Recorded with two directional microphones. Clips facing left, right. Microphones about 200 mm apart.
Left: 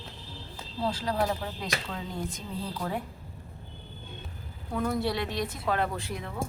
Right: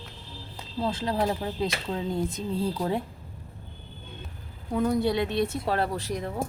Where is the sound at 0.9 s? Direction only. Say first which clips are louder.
Right 2 dB; 25° right (ahead or behind).